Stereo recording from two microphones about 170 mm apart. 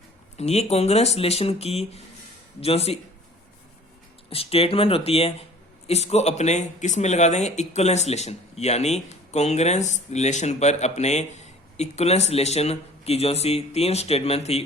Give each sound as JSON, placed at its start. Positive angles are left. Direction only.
{"t": 0.3, "sound": "speech", "side_deg": 40}
{"t": 4.3, "sound": "speech", "side_deg": 35}